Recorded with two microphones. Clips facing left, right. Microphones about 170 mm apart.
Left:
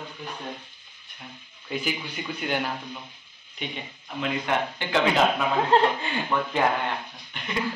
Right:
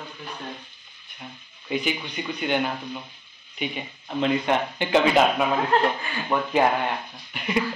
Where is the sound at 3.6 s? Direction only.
5° right (ahead or behind).